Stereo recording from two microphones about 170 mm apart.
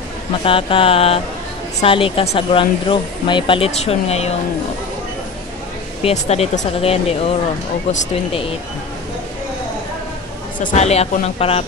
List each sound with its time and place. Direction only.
0.4 s speech: 35° left (ahead or behind)
6.0 s speech: 40° left (ahead or behind)
10.6 s speech: 45° left (ahead or behind)